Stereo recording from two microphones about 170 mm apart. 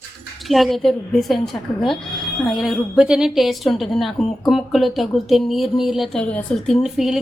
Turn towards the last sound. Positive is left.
turn(degrees=-5)  # may be behind; listen again after turning